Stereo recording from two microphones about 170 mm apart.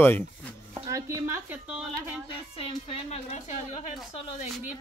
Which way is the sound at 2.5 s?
35° left (ahead or behind).